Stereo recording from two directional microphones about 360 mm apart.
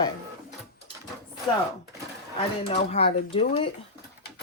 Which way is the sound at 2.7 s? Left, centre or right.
Left.